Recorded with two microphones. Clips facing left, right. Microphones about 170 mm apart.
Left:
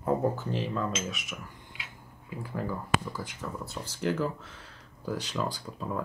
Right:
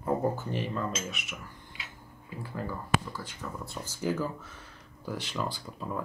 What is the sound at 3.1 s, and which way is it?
Speech, 10° left (ahead or behind).